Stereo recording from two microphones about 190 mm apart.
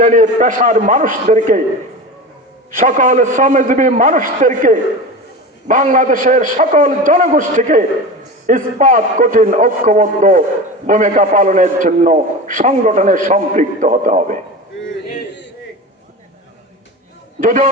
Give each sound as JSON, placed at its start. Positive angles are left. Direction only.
{"t": 0.0, "sound": "a man's voice", "side_deg": -40}
{"t": 2.7, "sound": "a man's voice", "side_deg": -40}
{"t": 17.4, "sound": "a man's voice", "side_deg": -40}